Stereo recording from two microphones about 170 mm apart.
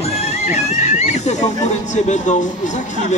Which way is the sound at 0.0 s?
40° left (ahead or behind).